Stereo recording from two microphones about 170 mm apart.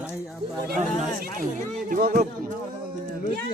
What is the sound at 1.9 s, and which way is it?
Speech, 50° right (ahead or behind).